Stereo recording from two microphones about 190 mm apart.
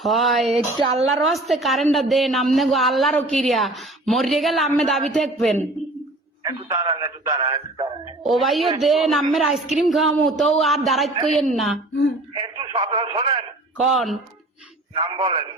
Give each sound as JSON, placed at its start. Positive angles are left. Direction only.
{"t": 0.0, "sound": "a woman's voice", "side_deg": 0}
{"t": 0.5, "sound": "a woman's voice", "side_deg": -30}
{"t": 1.3, "sound": "a woman's voice", "side_deg": 0}
{"t": 6.4, "sound": "speech", "side_deg": -15}
{"t": 8.2, "sound": "a woman's voice", "side_deg": 0}
{"t": 12.3, "sound": "speech", "side_deg": -25}
{"t": 13.9, "sound": "a woman's voice", "side_deg": 0}
{"t": 14.9, "sound": "a man's voice", "side_deg": -30}